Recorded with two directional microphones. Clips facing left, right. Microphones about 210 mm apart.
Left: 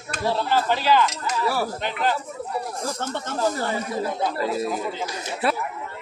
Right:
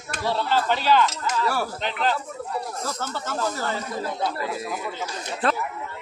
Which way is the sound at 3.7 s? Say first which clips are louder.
Left 3 dB; 15° left (ahead or behind).